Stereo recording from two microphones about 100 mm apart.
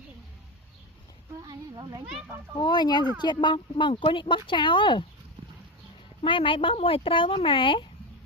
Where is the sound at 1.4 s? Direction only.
45° right (ahead or behind).